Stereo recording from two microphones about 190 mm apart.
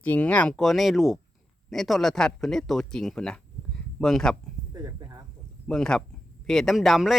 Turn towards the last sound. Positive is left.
turn(degrees=0)  # may be behind; listen again after turning